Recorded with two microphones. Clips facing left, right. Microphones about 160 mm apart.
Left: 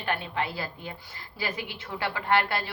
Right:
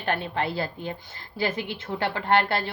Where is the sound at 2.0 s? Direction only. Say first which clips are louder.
Right 3 dB; 30° right (ahead or behind).